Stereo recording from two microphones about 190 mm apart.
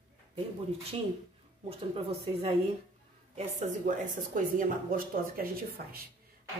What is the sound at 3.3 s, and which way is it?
Speech, 40° right (ahead or behind).